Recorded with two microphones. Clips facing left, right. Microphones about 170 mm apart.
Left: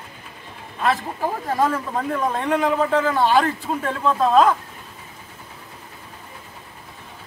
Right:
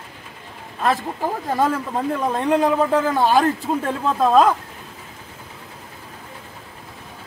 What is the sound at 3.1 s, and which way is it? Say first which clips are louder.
Speech: right 1 dB; 40° right (ahead or behind).